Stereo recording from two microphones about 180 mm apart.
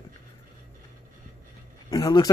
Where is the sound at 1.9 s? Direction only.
20° left (ahead or behind).